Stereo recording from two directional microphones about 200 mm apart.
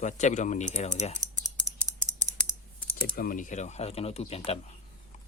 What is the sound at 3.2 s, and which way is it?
Speech, 40° left (ahead or behind).